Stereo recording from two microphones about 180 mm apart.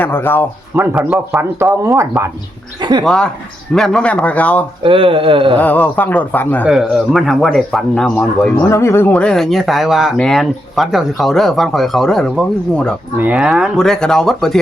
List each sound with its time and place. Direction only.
0.0 s speech: 10° left (ahead or behind)
0.8 s speech: 5° right (ahead or behind)
3.0 s speech: 5° left (ahead or behind)
4.8 s speech: 30° right (ahead or behind)
5.5 s speech: 10° left (ahead or behind)
6.7 s speech: centre (ahead or behind)